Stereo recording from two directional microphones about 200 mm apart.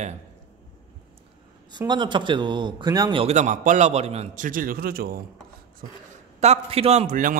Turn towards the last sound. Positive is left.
turn(degrees=-40)  # may be behind; listen again after turning